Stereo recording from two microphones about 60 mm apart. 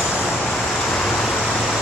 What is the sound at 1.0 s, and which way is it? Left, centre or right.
Vehicle, centre.